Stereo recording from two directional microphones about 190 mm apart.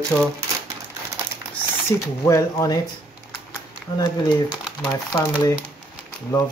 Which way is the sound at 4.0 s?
20° left (ahead or behind).